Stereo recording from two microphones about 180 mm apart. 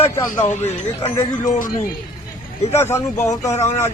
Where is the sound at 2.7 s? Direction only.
15° left (ahead or behind).